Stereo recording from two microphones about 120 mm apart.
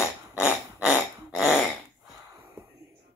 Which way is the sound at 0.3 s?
10° right (ahead or behind).